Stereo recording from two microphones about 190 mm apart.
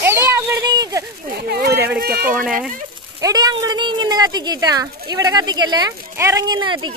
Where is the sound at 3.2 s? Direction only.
20° right (ahead or behind).